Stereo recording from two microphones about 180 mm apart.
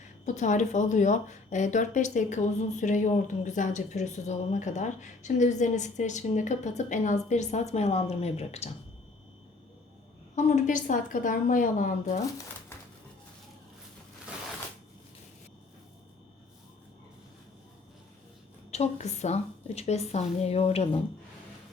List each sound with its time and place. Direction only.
0.3 s speech: 40° left (ahead or behind)
10.3 s a woman's voice: 45° left (ahead or behind)
18.7 s speech: 40° left (ahead or behind)